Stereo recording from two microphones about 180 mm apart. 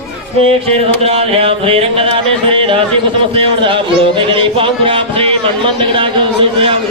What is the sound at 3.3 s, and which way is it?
Music, 30° right (ahead or behind).